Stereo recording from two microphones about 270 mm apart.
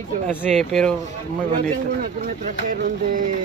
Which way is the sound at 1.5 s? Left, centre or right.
Right.